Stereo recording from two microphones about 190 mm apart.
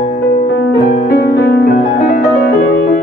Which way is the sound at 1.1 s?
65° left (ahead or behind).